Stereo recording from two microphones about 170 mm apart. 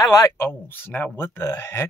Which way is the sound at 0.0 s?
15° left (ahead or behind).